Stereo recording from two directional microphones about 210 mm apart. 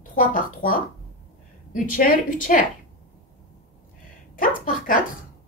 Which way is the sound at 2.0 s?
40° left (ahead or behind).